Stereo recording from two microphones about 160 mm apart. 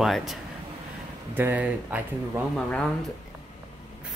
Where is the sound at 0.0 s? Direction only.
Centre (ahead or behind).